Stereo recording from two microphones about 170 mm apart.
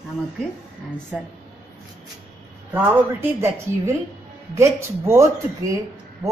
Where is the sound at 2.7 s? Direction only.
10° right (ahead or behind).